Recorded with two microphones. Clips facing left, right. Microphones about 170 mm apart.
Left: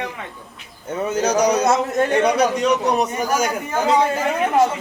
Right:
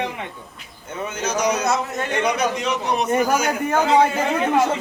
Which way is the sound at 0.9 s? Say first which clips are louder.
Left 6 dB; 40° left (ahead or behind).